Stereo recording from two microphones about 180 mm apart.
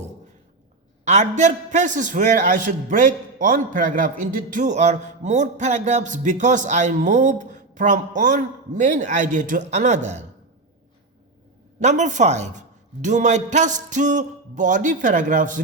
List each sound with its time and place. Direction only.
1.0 s a man's voice: 40° right (ahead or behind)
11.8 s a man's voice: 40° right (ahead or behind)